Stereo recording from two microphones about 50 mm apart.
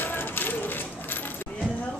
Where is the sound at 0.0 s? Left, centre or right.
Left.